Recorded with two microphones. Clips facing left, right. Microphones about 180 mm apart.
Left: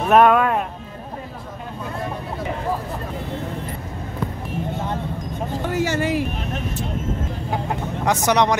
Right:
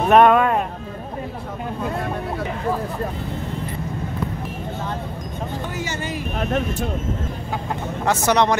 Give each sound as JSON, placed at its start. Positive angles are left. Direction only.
{"t": 0.1, "sound": "speech", "side_deg": 0}
{"t": 5.7, "sound": "speech", "side_deg": 80}
{"t": 8.0, "sound": "speech", "side_deg": 15}